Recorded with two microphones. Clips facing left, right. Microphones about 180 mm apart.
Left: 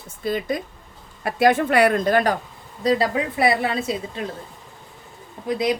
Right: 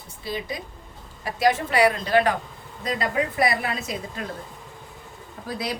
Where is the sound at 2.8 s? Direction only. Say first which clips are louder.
Left 5 dB; 30° left (ahead or behind).